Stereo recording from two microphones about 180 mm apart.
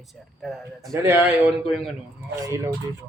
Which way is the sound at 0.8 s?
15° right (ahead or behind).